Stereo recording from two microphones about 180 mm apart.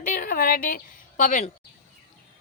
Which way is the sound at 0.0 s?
50° left (ahead or behind).